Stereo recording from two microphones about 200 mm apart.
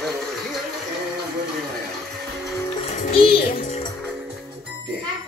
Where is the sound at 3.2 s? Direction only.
45° left (ahead or behind).